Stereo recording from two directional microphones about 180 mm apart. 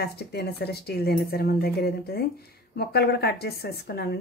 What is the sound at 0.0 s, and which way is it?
A woman's voice, 65° left (ahead or behind).